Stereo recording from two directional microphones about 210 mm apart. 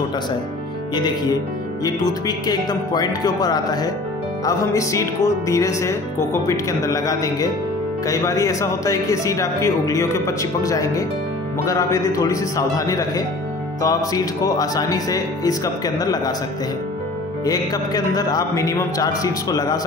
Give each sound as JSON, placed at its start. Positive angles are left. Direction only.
{"t": 1.9, "sound": "speech", "side_deg": 20}
{"t": 17.5, "sound": "speech", "side_deg": 15}